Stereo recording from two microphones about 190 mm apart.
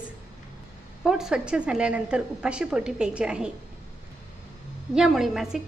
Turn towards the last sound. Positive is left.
turn(degrees=0)  # may be behind; listen again after turning